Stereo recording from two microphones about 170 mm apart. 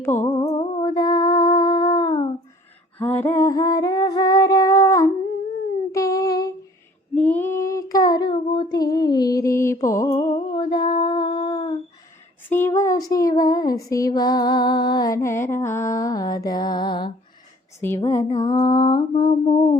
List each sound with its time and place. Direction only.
0.0 s mantra: 15° left (ahead or behind)
3.0 s female singing: 10° left (ahead or behind)
5.9 s humming: 20° left (ahead or behind)
7.2 s child singing: 10° left (ahead or behind); by 8.8 s 30° left (ahead or behind)
8.8 s music: 25° left (ahead or behind)
9.8 s mantra: 20° left (ahead or behind)
10.1 s a sound: 30° left (ahead or behind)
12.5 s a sound: 15° left (ahead or behind)
17.7 s mantra: 15° left (ahead or behind); by 19.6 s 30° left (ahead or behind)